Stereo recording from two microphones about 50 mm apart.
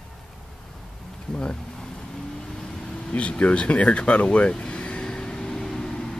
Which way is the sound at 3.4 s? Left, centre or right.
Left.